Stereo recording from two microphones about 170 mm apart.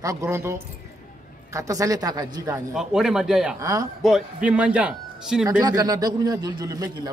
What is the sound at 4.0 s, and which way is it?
Speech, 5° right (ahead or behind).